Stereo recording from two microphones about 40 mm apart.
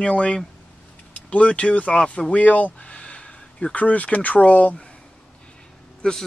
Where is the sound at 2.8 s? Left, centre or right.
Left.